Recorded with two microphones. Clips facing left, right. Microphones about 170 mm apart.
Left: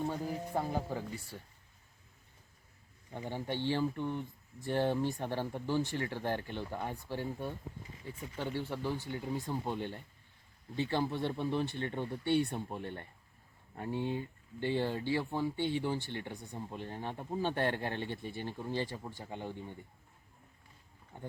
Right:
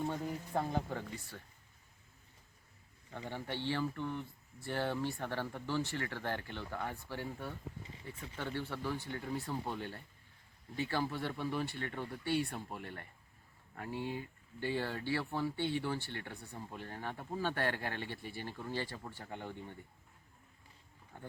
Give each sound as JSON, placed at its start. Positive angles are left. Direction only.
{"t": 0.1, "sound": "speech", "side_deg": 10}
{"t": 3.1, "sound": "speech", "side_deg": 15}
{"t": 21.1, "sound": "speech", "side_deg": 20}